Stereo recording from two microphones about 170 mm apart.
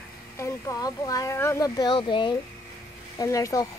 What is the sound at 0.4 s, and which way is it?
Speech, 20° left (ahead or behind).